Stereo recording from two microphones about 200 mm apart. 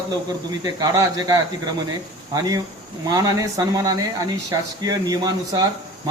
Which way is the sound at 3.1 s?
15° right (ahead or behind).